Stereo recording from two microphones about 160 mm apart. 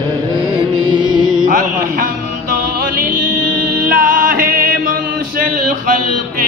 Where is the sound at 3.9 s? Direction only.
60° right (ahead or behind).